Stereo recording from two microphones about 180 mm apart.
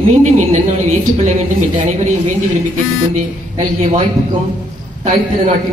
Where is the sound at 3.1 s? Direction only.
45° right (ahead or behind).